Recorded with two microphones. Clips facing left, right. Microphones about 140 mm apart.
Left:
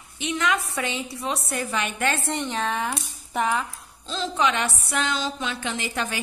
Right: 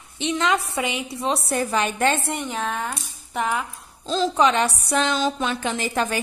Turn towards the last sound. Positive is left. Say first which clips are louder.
# right 5 dB
turn(degrees=-45)  # may be behind; listen again after turning